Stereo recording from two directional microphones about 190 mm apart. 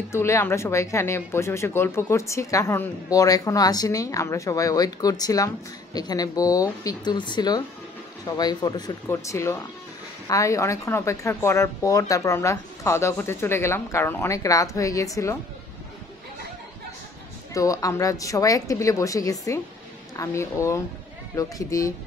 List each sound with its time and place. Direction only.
0.1 s speech: 15° left (ahead or behind)
17.6 s speech: 15° left (ahead or behind)